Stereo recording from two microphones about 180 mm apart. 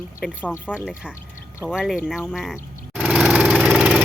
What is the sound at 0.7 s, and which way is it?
Speech, 5° right (ahead or behind).